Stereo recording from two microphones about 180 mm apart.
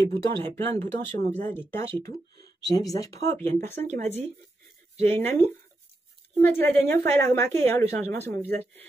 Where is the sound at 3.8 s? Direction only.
40° right (ahead or behind).